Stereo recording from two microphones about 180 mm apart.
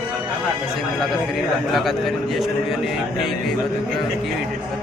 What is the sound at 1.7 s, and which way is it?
Speech, centre (ahead or behind).